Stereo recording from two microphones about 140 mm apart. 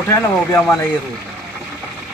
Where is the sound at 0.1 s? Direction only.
15° left (ahead or behind).